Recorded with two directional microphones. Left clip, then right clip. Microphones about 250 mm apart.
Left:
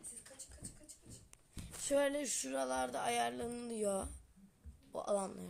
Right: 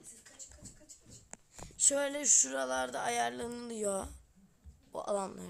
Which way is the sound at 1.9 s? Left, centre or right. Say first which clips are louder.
Right 2 dB; centre.